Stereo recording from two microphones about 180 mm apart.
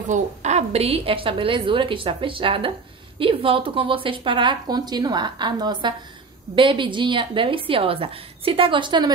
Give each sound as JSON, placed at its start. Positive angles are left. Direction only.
{"t": 0.1, "sound": "a woman's voice", "side_deg": -40}